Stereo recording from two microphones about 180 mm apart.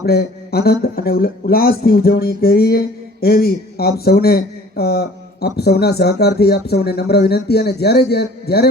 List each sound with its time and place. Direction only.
0.0 s speech: 60° left (ahead or behind)